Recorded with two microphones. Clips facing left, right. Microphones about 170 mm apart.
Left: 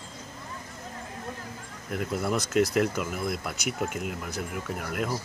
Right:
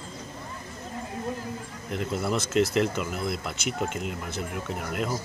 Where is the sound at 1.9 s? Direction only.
Centre (ahead or behind).